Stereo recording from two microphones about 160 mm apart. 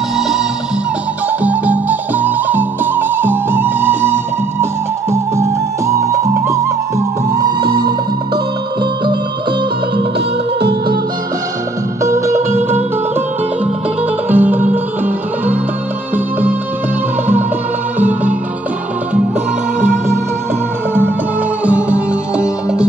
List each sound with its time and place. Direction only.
1.4 s music: 10° right (ahead or behind)
12.0 s music: 20° right (ahead or behind)
14.3 s music: 10° right (ahead or behind)
17.9 s music: 10° right (ahead or behind)
21.6 s music: 10° right (ahead or behind)